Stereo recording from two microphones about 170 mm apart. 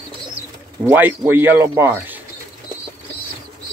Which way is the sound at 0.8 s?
10° right (ahead or behind).